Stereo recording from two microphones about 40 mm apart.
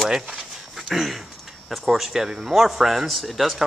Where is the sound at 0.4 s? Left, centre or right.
Centre.